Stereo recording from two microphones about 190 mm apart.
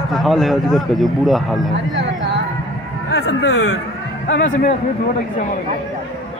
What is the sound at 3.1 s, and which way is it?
Speech, 60° left (ahead or behind).